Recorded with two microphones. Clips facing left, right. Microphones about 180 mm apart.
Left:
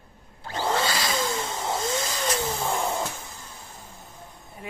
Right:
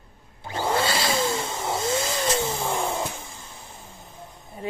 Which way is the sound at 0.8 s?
25° right (ahead or behind).